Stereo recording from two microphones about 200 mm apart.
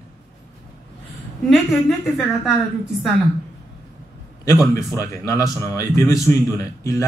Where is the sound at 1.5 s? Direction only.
Centre (ahead or behind).